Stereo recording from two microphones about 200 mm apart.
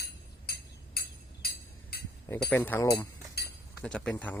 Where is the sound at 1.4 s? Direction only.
50° left (ahead or behind).